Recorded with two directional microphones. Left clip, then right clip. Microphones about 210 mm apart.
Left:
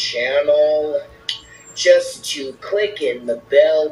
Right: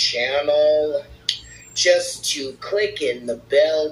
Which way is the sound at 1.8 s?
15° right (ahead or behind).